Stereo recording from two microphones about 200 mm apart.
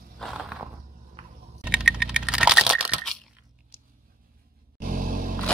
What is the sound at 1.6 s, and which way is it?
Computer keyboard, 5° right (ahead or behind).